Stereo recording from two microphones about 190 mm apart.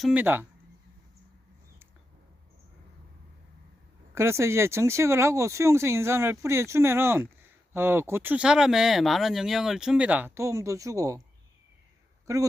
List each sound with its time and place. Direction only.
0.0 s speech: 10° right (ahead or behind)
4.1 s speech: 15° right (ahead or behind)
12.2 s a man's voice: 15° right (ahead or behind)